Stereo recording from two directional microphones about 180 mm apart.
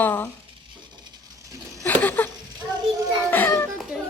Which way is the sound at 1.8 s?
10° left (ahead or behind).